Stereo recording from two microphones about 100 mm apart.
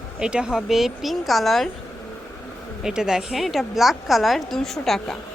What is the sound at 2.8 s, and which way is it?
Speech, 5° right (ahead or behind).